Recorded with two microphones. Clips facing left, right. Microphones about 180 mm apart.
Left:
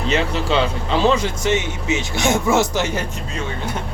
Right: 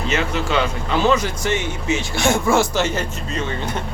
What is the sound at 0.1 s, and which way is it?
Speech, 30° left (ahead or behind).